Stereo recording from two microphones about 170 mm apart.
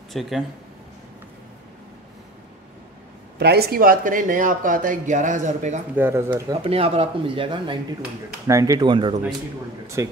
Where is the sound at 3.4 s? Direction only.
70° right (ahead or behind); by 5.8 s 45° right (ahead or behind).